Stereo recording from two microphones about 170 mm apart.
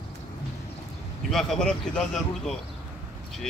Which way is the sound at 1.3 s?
5° left (ahead or behind).